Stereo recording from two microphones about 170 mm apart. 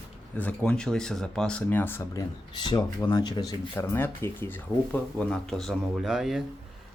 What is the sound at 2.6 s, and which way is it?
Speech, 25° left (ahead or behind).